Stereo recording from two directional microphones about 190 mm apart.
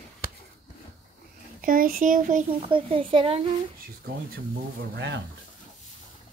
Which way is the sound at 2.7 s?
30° right (ahead or behind).